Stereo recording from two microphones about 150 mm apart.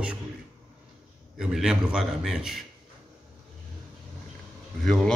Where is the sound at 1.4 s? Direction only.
5° right (ahead or behind).